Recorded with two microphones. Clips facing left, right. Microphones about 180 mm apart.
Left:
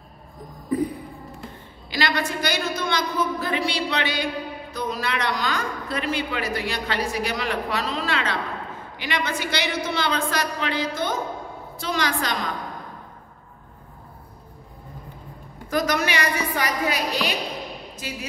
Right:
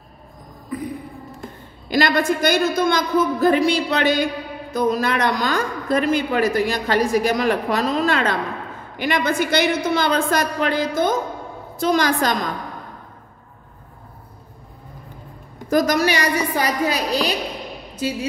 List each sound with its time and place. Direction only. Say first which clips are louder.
0.7 s a sound: left 5 dB; 30° left (ahead or behind)
1.9 s a woman's voice: right 7 dB; 45° right (ahead or behind)
15.7 s a woman's voice: right 6 dB; 40° right (ahead or behind)